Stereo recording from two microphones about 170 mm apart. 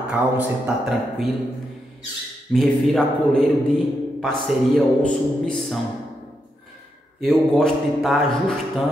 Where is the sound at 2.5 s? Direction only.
Centre (ahead or behind).